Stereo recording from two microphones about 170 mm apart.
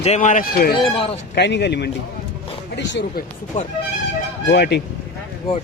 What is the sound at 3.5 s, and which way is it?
Speech, 50° left (ahead or behind).